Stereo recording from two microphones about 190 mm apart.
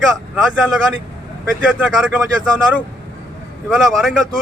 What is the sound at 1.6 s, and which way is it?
Speech, 5° right (ahead or behind).